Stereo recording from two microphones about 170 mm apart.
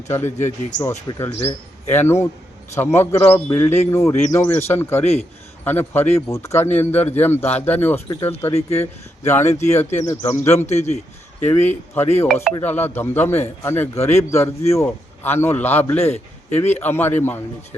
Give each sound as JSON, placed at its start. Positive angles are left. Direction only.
{"t": 0.1, "sound": "speech", "side_deg": 15}
{"t": 9.5, "sound": "speech", "side_deg": 40}
{"t": 10.0, "sound": "speech", "side_deg": 15}
{"t": 10.7, "sound": "speech", "side_deg": 40}
{"t": 12.6, "sound": "speech", "side_deg": 10}
{"t": 16.0, "sound": "a man's voice", "side_deg": 40}
{"t": 16.8, "sound": "speech", "side_deg": 10}